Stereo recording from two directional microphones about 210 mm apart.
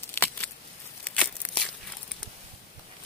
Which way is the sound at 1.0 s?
5° left (ahead or behind).